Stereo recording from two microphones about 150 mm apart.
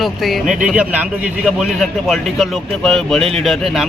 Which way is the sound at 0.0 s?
Centre (ahead or behind).